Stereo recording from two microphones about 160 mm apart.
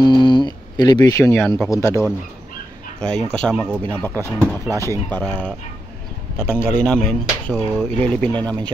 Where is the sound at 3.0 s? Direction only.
5° left (ahead or behind).